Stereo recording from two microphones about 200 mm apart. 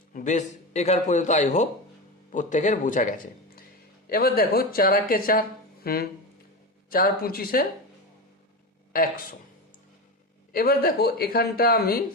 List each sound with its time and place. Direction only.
0.1 s a man's voice: 40° left (ahead or behind)
10.5 s speech: 50° left (ahead or behind)